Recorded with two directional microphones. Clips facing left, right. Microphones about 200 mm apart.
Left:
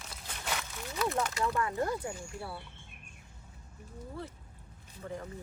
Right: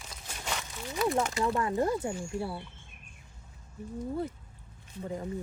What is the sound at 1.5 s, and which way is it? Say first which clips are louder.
Speech: right 4 dB; 25° right (ahead or behind).